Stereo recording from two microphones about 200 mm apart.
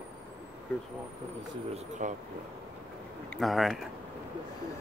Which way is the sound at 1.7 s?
40° right (ahead or behind).